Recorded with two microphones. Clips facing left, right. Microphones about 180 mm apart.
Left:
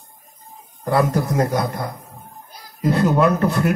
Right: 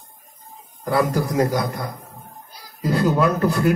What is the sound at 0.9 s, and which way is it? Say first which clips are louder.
A man's voice: left 1 dB; 25° left (ahead or behind).